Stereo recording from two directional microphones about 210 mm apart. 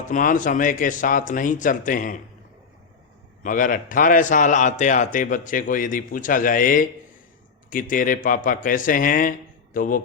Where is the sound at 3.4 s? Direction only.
40° left (ahead or behind).